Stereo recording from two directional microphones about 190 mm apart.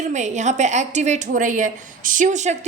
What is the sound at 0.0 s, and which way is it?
A woman's voice, 40° right (ahead or behind).